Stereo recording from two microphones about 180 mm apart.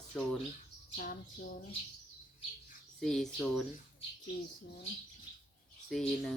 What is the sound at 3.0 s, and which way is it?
Speech, centre (ahead or behind).